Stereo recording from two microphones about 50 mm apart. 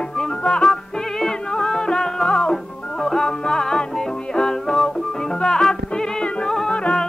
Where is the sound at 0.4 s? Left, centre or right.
Centre.